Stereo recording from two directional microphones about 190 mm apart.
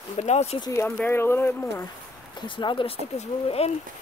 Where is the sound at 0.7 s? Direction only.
10° left (ahead or behind).